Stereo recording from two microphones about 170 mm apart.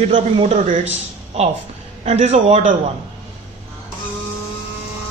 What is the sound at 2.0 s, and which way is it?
Speech, 40° right (ahead or behind).